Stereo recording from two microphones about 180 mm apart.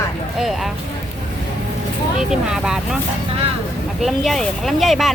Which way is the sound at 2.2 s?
5° right (ahead or behind).